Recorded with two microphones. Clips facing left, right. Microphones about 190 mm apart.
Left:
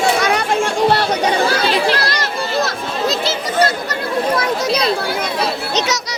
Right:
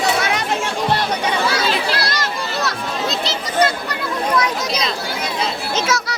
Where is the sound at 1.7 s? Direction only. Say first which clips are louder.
Left 4 dB; 40° left (ahead or behind).